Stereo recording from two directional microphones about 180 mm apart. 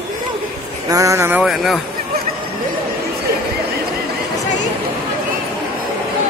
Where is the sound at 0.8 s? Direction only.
20° right (ahead or behind).